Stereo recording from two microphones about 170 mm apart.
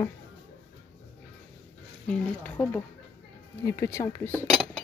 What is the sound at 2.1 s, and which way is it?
Speech, 10° left (ahead or behind).